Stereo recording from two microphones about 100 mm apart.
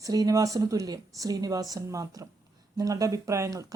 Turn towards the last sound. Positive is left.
turn(degrees=-30)  # may be behind; listen again after turning